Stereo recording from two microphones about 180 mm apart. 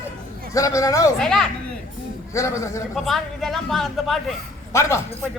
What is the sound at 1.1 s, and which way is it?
Speech, 5° left (ahead or behind).